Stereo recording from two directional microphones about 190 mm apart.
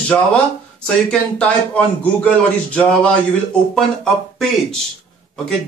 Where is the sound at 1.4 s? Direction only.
5° left (ahead or behind).